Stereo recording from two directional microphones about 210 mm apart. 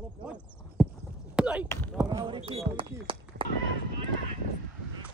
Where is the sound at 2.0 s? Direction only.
20° right (ahead or behind).